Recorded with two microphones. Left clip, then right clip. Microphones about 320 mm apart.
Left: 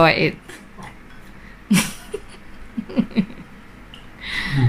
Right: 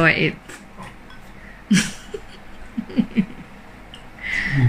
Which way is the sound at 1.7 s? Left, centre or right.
Centre.